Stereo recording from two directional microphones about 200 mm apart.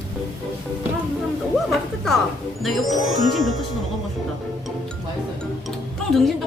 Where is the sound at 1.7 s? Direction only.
Centre (ahead or behind).